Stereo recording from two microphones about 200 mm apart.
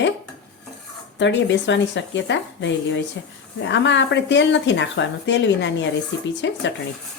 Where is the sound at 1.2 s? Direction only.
65° left (ahead or behind).